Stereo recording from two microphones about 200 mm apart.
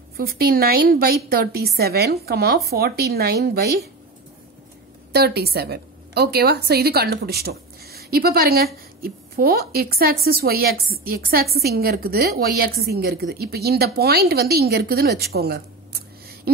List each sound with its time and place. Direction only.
0.2 s a woman's voice: 50° right (ahead or behind)
5.1 s a woman's voice: 55° right (ahead or behind)